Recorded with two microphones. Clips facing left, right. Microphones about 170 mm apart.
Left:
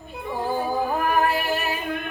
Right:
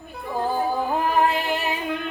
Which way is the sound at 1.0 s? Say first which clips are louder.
Right 3 dB; 20° right (ahead or behind).